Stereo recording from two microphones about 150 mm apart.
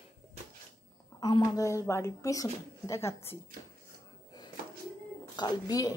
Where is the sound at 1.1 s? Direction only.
25° left (ahead or behind).